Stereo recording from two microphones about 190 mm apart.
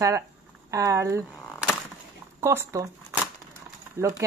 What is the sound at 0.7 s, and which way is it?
Speech, 15° right (ahead or behind).